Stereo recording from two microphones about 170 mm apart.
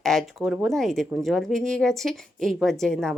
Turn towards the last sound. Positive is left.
turn(degrees=5)  # may be behind; listen again after turning